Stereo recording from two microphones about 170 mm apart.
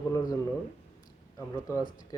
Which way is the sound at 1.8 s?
50° left (ahead or behind).